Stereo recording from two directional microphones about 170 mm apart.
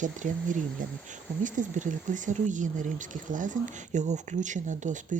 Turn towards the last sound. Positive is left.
turn(degrees=-45)  # may be behind; listen again after turning